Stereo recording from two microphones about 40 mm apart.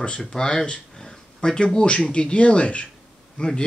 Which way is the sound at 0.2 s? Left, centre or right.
Centre.